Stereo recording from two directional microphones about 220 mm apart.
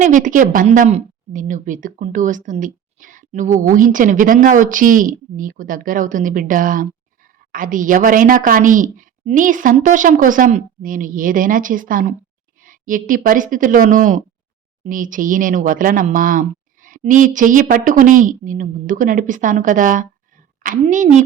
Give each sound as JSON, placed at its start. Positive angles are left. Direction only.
{"t": 0.0, "sound": "a woman's voice", "side_deg": -35}